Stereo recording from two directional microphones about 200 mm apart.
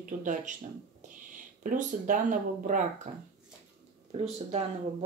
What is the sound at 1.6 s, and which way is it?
Speech, 40° right (ahead or behind).